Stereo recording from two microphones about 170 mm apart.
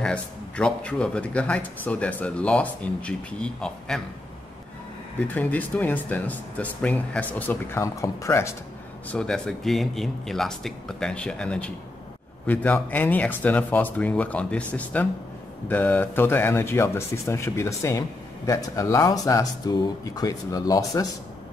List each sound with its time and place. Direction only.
0.0 s speech: 5° left (ahead or behind)
5.3 s speech: 10° left (ahead or behind)
9.1 s speech: 5° left (ahead or behind); by 21.1 s 20° left (ahead or behind)